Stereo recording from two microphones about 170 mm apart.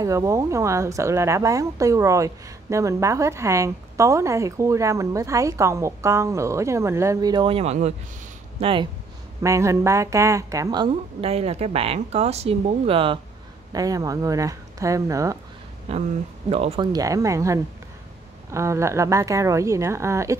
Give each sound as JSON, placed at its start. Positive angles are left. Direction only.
{"t": 0.0, "sound": "a woman's voice", "side_deg": -20}
{"t": 9.4, "sound": "a woman's voice", "side_deg": -20}
{"t": 10.9, "sound": "speech", "side_deg": -35}
{"t": 13.7, "sound": "speech", "side_deg": -20}
{"t": 15.9, "sound": "a woman's voice", "side_deg": -35}